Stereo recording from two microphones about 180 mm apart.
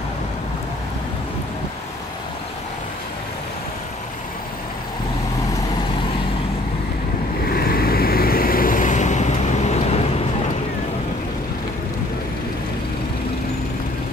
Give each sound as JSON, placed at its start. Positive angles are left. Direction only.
{"t": 7.4, "sound": "vehicle", "side_deg": 55}